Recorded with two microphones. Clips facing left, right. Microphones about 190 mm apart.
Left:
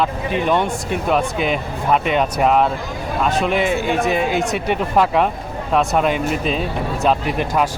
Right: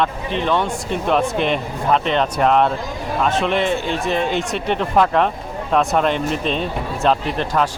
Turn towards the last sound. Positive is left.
turn(degrees=10)  # may be behind; listen again after turning